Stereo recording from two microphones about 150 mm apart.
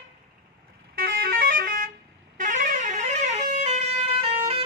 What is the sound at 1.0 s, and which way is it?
Vehicle horn, 70° right (ahead or behind).